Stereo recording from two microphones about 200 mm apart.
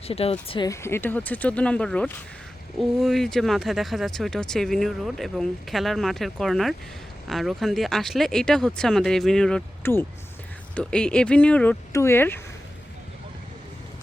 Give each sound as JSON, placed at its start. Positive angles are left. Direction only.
{"t": 0.1, "sound": "speech", "side_deg": 30}
{"t": 0.7, "sound": "speech", "side_deg": 15}